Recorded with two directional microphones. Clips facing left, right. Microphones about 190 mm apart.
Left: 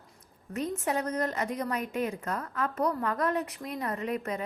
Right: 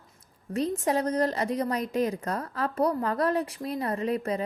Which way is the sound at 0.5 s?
35° right (ahead or behind).